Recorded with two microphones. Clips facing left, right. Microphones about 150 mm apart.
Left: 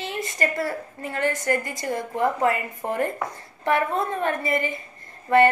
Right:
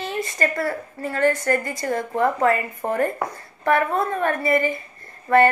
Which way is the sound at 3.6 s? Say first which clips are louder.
Right 3 dB; 20° left (ahead or behind).